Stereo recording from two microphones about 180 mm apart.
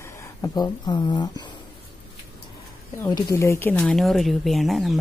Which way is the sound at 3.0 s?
20° left (ahead or behind).